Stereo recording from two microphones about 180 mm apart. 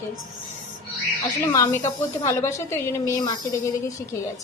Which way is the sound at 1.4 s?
20° left (ahead or behind).